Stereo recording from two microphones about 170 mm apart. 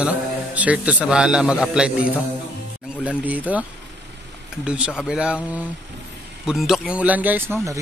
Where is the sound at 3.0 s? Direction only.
10° right (ahead or behind).